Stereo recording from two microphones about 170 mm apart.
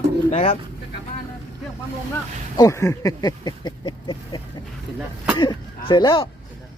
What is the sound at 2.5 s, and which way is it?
Speech, 20° left (ahead or behind).